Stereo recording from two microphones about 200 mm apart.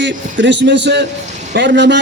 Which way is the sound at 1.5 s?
60° right (ahead or behind).